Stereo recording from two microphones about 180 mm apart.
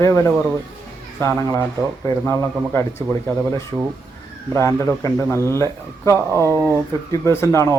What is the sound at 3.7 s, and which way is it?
Speech, 5° left (ahead or behind).